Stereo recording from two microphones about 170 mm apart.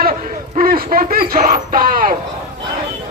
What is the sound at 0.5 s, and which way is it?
Run, 55° right (ahead or behind).